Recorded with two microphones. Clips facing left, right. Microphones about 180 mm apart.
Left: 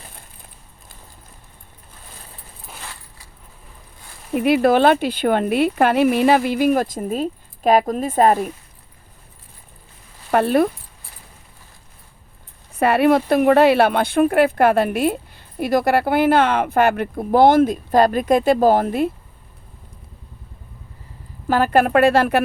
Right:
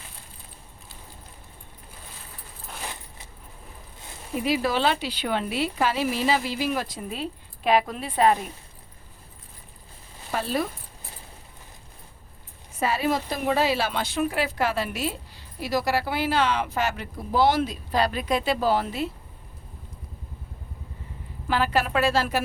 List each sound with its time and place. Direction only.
2.8 s keys jangling: 20° right (ahead or behind)
4.4 s speech: 60° left (ahead or behind)
10.3 s speech: 60° left (ahead or behind)
12.7 s speech: 60° left (ahead or behind)
21.4 s speech: 45° left (ahead or behind)